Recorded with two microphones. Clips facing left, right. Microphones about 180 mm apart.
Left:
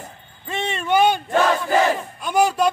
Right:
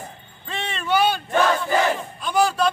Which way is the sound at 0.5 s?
20° left (ahead or behind).